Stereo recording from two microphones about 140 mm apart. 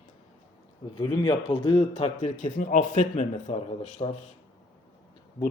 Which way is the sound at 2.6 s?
65° left (ahead or behind).